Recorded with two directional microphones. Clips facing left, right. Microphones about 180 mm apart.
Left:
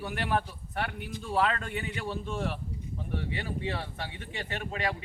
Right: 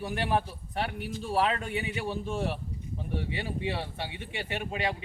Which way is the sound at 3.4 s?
10° right (ahead or behind).